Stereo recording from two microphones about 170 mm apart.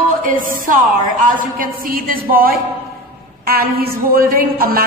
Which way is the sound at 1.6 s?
55° right (ahead or behind).